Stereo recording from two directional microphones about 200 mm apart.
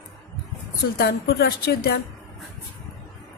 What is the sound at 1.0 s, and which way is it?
A woman's voice, 50° left (ahead or behind).